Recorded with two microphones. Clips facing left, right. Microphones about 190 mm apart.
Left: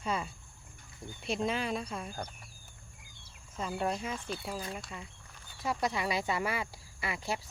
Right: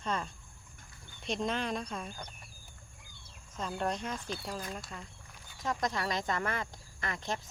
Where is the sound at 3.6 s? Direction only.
5° left (ahead or behind).